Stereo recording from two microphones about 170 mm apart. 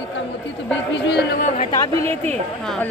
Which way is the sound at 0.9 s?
85° left.